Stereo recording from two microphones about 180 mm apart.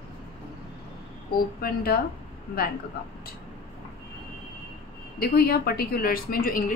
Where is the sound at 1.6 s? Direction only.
55° left (ahead or behind).